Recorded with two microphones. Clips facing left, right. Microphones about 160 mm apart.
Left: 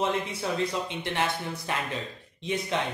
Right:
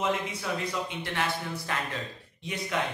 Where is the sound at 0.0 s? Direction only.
30° left (ahead or behind).